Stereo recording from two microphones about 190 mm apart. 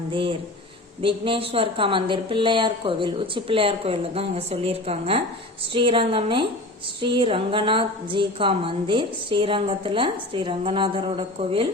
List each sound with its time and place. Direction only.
0.1 s a woman's voice: 25° right (ahead or behind)